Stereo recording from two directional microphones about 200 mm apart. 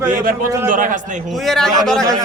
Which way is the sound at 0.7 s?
40° right (ahead or behind).